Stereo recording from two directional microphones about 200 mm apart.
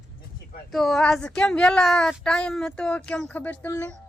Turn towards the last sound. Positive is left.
turn(degrees=10)  # may be behind; listen again after turning